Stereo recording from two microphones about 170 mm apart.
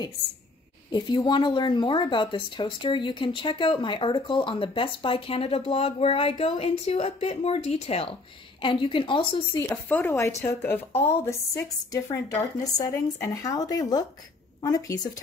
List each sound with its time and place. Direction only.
0.9 s speech: 25° left (ahead or behind)
9.6 s speech: 15° left (ahead or behind)